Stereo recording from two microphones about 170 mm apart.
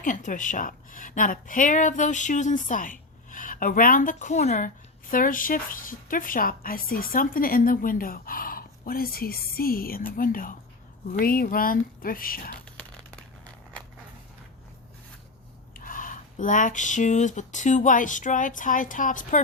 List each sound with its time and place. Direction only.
0.0 s a woman's voice: 50° left (ahead or behind)
15.7 s a woman's voice: 50° left (ahead or behind)